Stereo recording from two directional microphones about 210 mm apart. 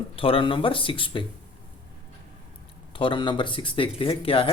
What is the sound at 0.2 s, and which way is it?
Speech, 25° left (ahead or behind).